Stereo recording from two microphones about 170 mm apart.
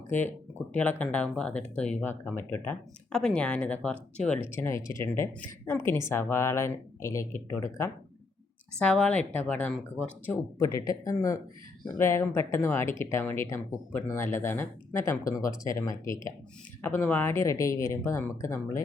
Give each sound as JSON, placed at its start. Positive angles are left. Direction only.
{"t": 0.7, "sound": "speech", "side_deg": 10}
{"t": 10.7, "sound": "speech", "side_deg": 20}